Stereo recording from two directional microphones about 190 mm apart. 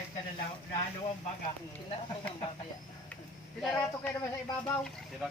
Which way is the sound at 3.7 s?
15° left (ahead or behind).